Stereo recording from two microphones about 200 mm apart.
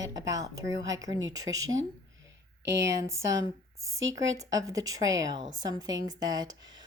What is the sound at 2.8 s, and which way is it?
Speech, 15° right (ahead or behind).